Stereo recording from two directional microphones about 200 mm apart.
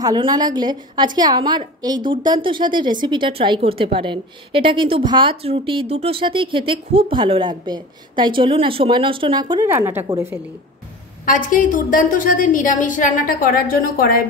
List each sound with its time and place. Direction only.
0.0 s a woman's voice: 20° right (ahead or behind)
11.2 s a woman's voice: 40° left (ahead or behind)